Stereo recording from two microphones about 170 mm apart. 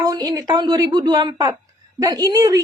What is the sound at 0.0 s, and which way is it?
A woman's voice, 20° right (ahead or behind).